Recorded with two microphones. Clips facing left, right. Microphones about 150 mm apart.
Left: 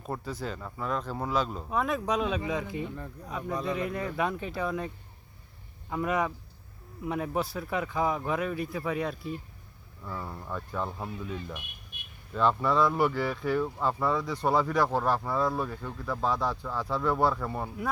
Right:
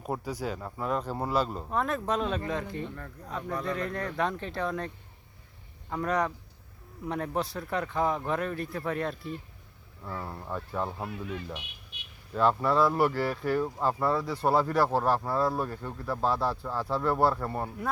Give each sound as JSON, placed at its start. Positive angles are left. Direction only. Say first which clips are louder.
{"t": 0.0, "sound": "speech", "louder": "right 2 dB", "side_deg": -10}
{"t": 5.9, "sound": "speech", "louder": "even", "side_deg": 5}
{"t": 10.2, "sound": "speech", "louder": "right 1 dB", "side_deg": -10}
{"t": 11.6, "sound": "a sound", "louder": "even", "side_deg": 50}
{"t": 12.3, "sound": "speech", "louder": "right 1 dB", "side_deg": -5}